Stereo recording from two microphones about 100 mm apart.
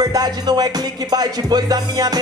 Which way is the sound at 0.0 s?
40° right (ahead or behind).